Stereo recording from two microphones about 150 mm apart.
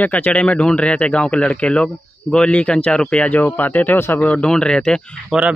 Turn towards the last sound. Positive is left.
turn(degrees=5)  # may be behind; listen again after turning